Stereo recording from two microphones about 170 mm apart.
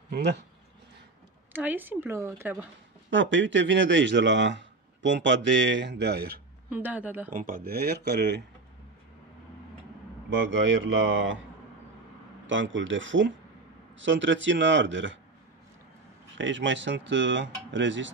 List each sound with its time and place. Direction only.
1.5 s speech: 10° right (ahead or behind)
3.1 s speech: 90° right; by 6.4 s 70° right (ahead or behind)
6.7 s speech: 10° right (ahead or behind)
7.3 s speech: 55° right (ahead or behind); by 8.4 s 80° right
10.3 s speech: 90° right
12.4 s speech: 90° right
16.3 s speech: 90° right